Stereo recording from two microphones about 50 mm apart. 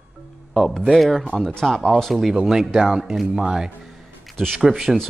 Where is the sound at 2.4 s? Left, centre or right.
Centre.